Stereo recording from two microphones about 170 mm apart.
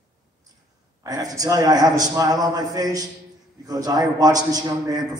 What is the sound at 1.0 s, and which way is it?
A man's voice, 20° right (ahead or behind).